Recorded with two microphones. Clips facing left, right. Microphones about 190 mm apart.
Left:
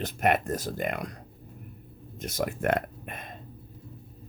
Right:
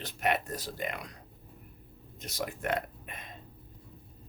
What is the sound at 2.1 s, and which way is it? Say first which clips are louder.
Speech: left 6 dB; 50° left (ahead or behind).